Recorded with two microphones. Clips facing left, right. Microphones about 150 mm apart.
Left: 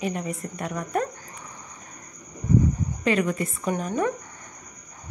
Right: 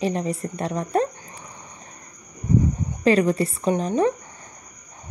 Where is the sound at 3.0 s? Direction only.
35° right (ahead or behind).